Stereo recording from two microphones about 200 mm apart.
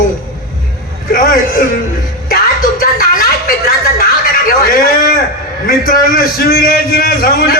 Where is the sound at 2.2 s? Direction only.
45° left (ahead or behind).